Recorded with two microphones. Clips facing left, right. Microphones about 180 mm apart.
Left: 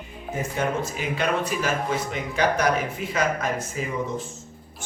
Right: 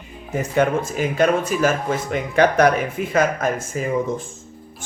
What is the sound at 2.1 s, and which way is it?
Speech, 60° right (ahead or behind).